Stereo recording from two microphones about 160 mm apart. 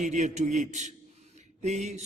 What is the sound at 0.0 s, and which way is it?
A man's voice, 50° right (ahead or behind).